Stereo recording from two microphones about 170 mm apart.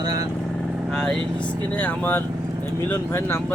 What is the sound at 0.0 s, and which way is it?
Vehicle, 20° right (ahead or behind).